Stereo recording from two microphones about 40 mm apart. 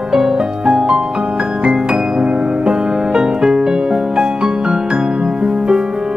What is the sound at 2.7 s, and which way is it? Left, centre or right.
Music, centre.